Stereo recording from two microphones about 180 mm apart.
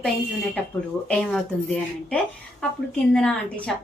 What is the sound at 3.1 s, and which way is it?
Speech, 5° left (ahead or behind).